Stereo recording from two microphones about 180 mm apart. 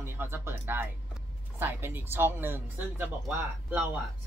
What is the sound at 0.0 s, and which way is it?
Music, 15° right (ahead or behind).